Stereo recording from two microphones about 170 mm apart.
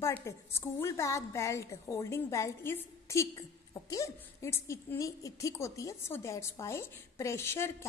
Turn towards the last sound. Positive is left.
turn(degrees=15)  # may be behind; listen again after turning